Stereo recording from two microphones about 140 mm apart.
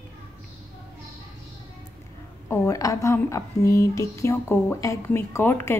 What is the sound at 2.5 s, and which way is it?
A woman's voice, 20° left (ahead or behind).